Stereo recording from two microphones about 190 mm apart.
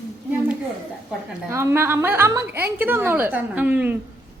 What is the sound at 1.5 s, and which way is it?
A woman's voice, 15° right (ahead or behind).